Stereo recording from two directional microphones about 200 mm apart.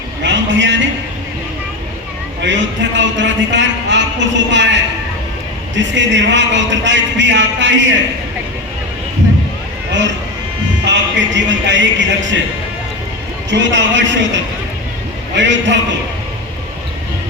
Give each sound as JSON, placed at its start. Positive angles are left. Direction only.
{"t": 0.2, "sound": "a sound", "side_deg": -65}
{"t": 2.4, "sound": "a man's voice", "side_deg": -65}
{"t": 10.8, "sound": "speech", "side_deg": -65}
{"t": 13.5, "sound": "a man's voice", "side_deg": -65}
{"t": 15.4, "sound": "a man's voice", "side_deg": -65}